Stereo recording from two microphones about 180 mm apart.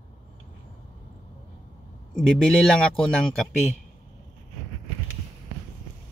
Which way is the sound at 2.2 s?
5° left (ahead or behind).